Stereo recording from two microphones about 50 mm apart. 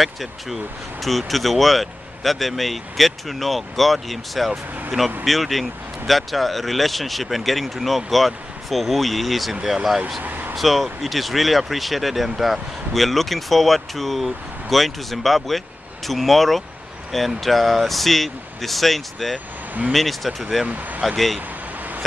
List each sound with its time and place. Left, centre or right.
0.0 s speech: centre
10.2 s vehicle: right
10.5 s speech: centre
20.6 s speech: right